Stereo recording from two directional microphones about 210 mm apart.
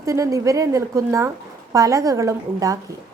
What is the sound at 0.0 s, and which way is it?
A woman's voice, 15° right (ahead or behind).